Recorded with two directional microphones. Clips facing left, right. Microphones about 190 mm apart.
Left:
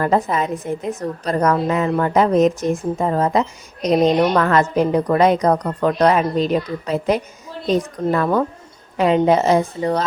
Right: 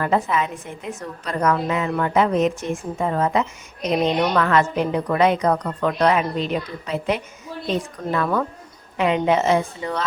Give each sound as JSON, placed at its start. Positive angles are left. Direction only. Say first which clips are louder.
{"t": 0.0, "sound": "a woman's voice", "louder": "left 3 dB", "side_deg": 40}